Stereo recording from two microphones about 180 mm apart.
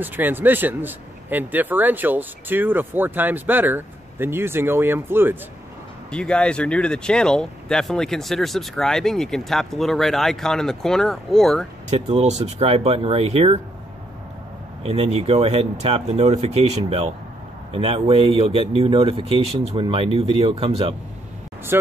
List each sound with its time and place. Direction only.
0.0 s speech: 10° right (ahead or behind)
6.1 s speech: 5° left (ahead or behind)
11.9 s speech: 35° right (ahead or behind)
14.8 s speech: 35° right (ahead or behind)